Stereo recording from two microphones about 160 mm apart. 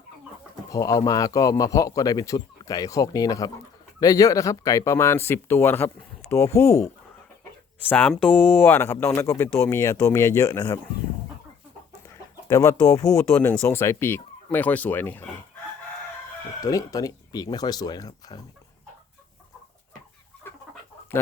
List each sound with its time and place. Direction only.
0.7 s a man's voice: 20° left (ahead or behind)
12.5 s speech: 20° left (ahead or behind)
16.6 s a man's voice: 20° left (ahead or behind)